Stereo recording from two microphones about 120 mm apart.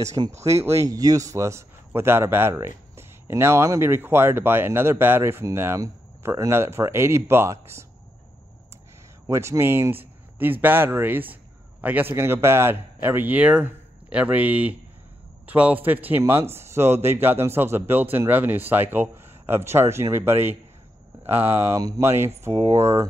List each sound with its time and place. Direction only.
0.0 s speech: 25° right (ahead or behind)
9.3 s a man's voice: 25° right (ahead or behind)